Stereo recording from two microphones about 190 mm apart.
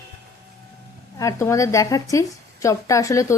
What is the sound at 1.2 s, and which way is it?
A woman's voice, 15° left (ahead or behind).